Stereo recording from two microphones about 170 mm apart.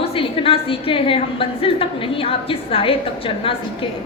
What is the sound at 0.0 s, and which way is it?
A woman's voice, 30° left (ahead or behind).